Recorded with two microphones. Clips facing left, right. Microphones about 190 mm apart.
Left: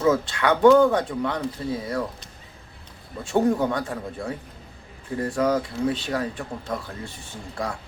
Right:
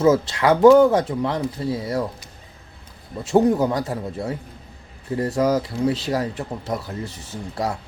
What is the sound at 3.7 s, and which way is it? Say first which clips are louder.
Speech: right 3 dB; 30° right (ahead or behind).